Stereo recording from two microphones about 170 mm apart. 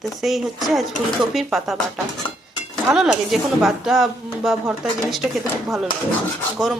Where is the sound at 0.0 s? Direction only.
Centre (ahead or behind).